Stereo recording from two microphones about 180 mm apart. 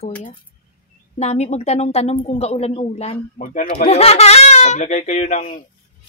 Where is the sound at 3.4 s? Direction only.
50° left (ahead or behind).